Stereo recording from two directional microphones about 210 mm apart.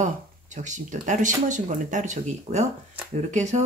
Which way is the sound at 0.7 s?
35° right (ahead or behind).